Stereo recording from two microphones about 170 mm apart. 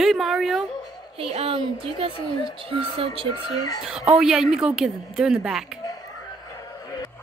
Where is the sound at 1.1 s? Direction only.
35° right (ahead or behind).